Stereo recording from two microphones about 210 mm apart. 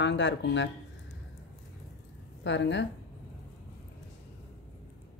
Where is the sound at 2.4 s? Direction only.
60° left (ahead or behind).